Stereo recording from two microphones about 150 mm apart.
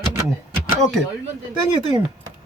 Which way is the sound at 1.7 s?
35° right (ahead or behind).